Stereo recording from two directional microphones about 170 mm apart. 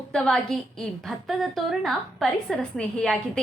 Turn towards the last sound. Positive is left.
turn(degrees=5)  # may be behind; listen again after turning